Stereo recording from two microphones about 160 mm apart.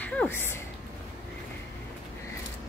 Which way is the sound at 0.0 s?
10° left (ahead or behind).